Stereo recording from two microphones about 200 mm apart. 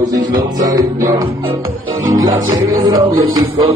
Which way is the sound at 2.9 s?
20° right (ahead or behind).